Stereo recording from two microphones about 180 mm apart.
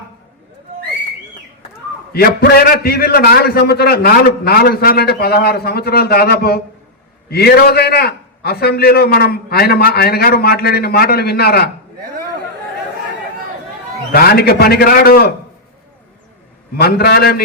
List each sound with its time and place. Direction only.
2.1 s a man's voice: 60° left (ahead or behind)
14.1 s a man's voice: 55° left (ahead or behind)
16.7 s a man's voice: 60° left (ahead or behind)